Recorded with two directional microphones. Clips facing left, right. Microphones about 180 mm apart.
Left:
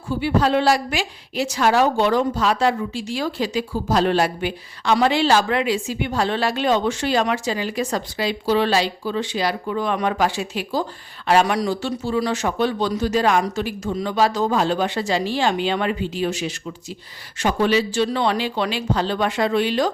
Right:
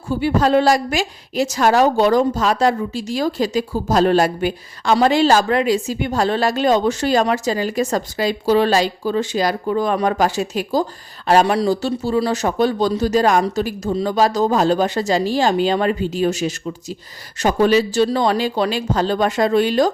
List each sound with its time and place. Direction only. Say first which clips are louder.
0.1 s a woman's voice: right 3 dB; 45° right (ahead or behind)